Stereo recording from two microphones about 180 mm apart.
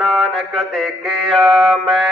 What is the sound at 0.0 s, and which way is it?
Mantra, centre (ahead or behind).